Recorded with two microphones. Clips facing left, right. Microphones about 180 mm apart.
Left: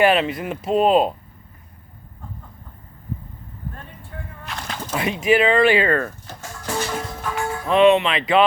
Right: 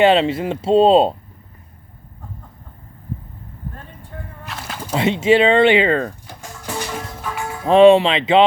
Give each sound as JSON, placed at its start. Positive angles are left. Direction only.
{"t": 0.0, "sound": "speech", "side_deg": -25}
{"t": 4.4, "sound": "a sound", "side_deg": -5}
{"t": 4.9, "sound": "music", "side_deg": -25}
{"t": 7.6, "sound": "speech", "side_deg": -30}